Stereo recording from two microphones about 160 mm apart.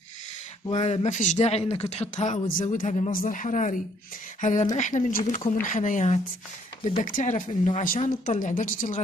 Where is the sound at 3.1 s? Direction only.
60° left (ahead or behind).